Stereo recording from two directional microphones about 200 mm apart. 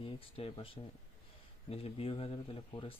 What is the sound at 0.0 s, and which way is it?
Speech, 25° left (ahead or behind).